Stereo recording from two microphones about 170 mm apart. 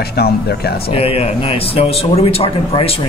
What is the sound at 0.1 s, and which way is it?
Speech, 70° left (ahead or behind).